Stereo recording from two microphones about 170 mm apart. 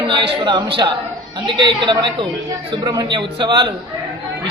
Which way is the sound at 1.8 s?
25° right (ahead or behind).